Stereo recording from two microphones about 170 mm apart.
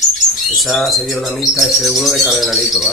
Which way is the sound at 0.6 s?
Centre (ahead or behind).